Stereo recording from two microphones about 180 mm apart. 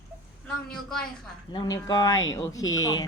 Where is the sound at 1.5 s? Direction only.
20° left (ahead or behind).